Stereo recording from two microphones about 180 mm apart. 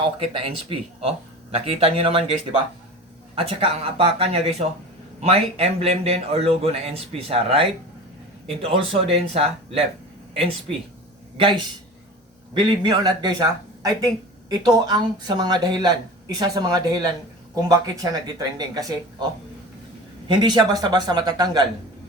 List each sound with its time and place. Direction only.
0.0 s speech: 35° right (ahead or behind)
3.3 s speech: 30° right (ahead or behind)
12.8 s speech: 25° right (ahead or behind)
20.2 s speech: 25° right (ahead or behind)